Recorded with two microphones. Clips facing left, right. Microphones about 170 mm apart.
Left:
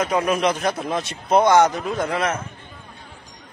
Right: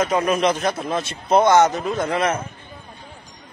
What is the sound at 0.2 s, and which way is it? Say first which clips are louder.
Speech: right 1 dB; 10° left (ahead or behind).